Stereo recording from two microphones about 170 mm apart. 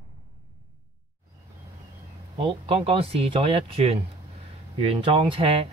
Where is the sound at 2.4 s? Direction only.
30° right (ahead or behind).